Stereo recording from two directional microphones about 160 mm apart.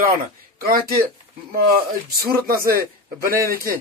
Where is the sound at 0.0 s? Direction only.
65° right (ahead or behind).